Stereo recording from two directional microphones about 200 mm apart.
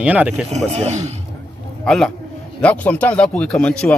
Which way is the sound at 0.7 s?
35° right (ahead or behind).